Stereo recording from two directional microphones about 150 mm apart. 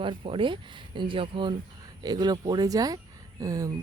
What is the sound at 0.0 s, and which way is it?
Speech, 35° right (ahead or behind).